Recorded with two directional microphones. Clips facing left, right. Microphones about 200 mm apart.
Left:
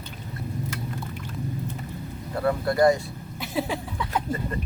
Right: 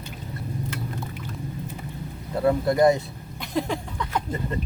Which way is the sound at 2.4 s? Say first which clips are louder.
Right 2 dB; 20° right (ahead or behind).